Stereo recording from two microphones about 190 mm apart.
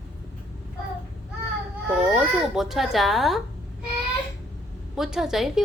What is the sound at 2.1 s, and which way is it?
A child's voice, centre (ahead or behind).